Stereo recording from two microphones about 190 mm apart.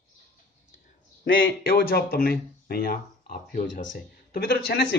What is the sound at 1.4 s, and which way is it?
Speech, 55° left (ahead or behind).